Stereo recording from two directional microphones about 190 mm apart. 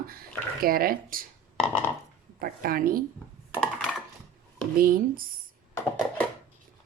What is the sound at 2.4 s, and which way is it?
Speech, 50° right (ahead or behind).